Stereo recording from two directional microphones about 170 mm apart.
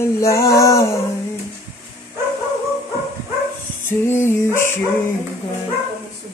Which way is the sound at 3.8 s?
15° left (ahead or behind).